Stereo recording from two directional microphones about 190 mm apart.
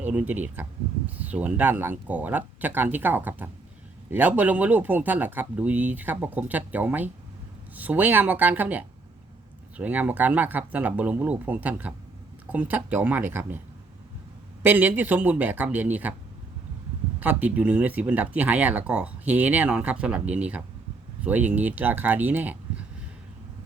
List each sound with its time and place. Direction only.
0.0 s speech: 5° right (ahead or behind)
14.6 s speech: 10° right (ahead or behind)
17.2 s speech: 10° right (ahead or behind)